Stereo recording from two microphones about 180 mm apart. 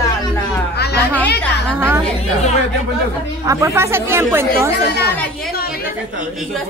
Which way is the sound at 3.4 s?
15° right (ahead or behind).